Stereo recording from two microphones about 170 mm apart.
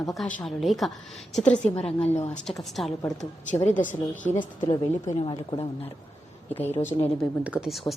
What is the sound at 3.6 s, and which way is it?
Speech, 50° left (ahead or behind).